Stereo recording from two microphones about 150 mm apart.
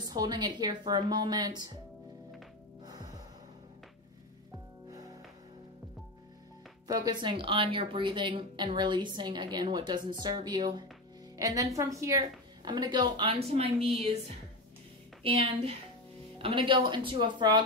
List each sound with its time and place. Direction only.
0.0 s a woman's voice: 25° right (ahead or behind)
2.8 s music: 25° right (ahead or behind)
6.9 s a woman's voice: 25° right (ahead or behind)
15.2 s a woman's voice: 40° right (ahead or behind)